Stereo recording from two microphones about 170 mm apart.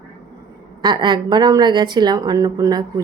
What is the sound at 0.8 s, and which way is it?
A woman's voice, 25° right (ahead or behind).